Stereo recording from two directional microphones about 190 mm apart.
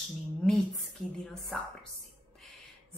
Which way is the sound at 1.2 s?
Centre (ahead or behind).